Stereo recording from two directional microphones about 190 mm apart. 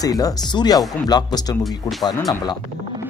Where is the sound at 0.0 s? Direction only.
20° left (ahead or behind).